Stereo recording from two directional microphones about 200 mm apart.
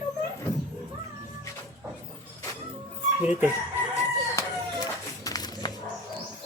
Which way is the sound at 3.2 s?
5° right (ahead or behind).